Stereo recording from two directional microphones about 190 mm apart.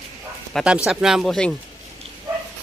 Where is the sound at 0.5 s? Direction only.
Centre (ahead or behind).